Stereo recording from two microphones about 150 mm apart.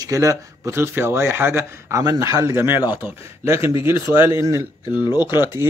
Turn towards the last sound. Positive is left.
turn(degrees=-15)  # may be behind; listen again after turning